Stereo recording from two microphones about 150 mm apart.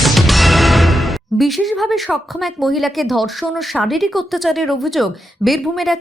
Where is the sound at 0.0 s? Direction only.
Centre (ahead or behind).